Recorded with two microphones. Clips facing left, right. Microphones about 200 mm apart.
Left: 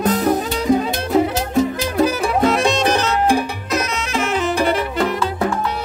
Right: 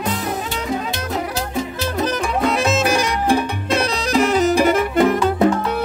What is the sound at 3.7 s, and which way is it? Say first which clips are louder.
Music: right 4 dB; 35° right (ahead or behind).